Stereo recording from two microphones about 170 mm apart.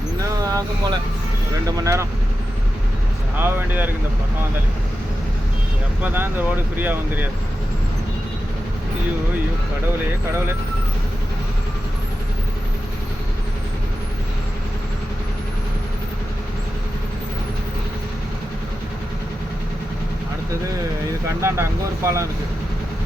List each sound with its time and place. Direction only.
0.4 s speech: 20° right (ahead or behind)
3.3 s speech: 10° right (ahead or behind)
6.0 s speech: 10° right (ahead or behind)
21.2 s speech: 15° right (ahead or behind)